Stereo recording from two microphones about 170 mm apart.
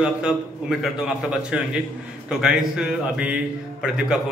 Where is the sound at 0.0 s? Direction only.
5° right (ahead or behind).